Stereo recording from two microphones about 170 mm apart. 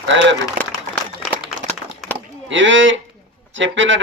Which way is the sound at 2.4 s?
90° right.